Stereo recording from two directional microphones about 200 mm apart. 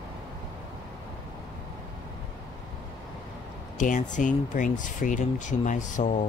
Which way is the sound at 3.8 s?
40° left (ahead or behind).